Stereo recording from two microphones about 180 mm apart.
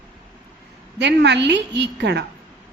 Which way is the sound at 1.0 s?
70° right (ahead or behind).